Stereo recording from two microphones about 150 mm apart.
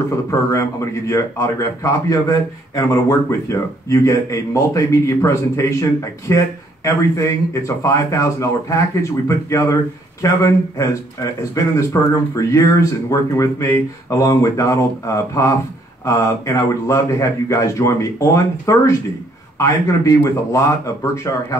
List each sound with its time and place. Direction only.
0.3 s speech: 20° left (ahead or behind)